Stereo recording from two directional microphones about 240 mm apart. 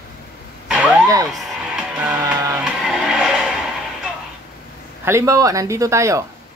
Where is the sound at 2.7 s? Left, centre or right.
Centre.